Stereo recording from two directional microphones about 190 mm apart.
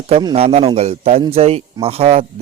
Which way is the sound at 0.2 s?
25° right (ahead or behind).